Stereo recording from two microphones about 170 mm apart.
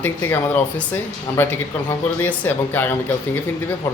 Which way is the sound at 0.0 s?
15° left (ahead or behind).